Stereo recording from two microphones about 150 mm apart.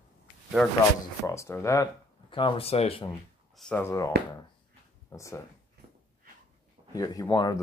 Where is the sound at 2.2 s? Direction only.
35° left (ahead or behind).